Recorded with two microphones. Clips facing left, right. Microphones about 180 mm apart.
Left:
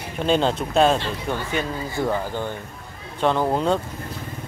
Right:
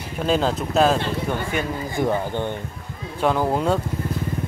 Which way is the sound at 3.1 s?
5° right (ahead or behind).